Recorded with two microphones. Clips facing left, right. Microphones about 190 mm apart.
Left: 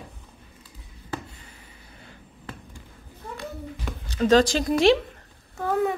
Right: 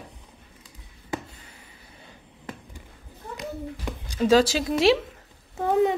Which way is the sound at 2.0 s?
20° right (ahead or behind).